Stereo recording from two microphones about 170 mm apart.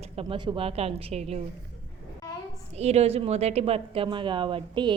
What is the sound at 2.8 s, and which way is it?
A woman's voice, 40° right (ahead or behind).